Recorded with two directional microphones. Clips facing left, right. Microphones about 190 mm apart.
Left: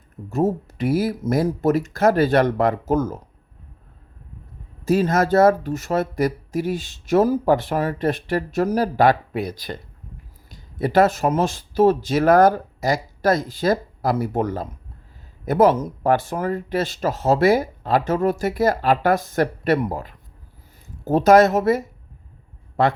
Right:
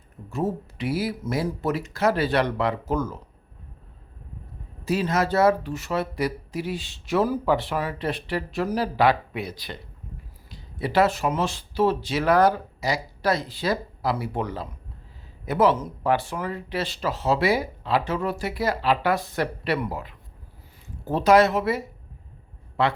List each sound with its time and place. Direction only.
0.3 s speech: 45° left (ahead or behind)
4.9 s speech: 45° left (ahead or behind)